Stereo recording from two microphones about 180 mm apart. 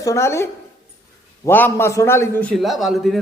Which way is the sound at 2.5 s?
Centre (ahead or behind).